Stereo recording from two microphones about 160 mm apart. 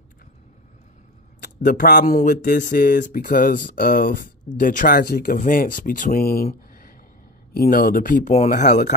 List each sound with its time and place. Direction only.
1.4 s speech: 65° left (ahead or behind)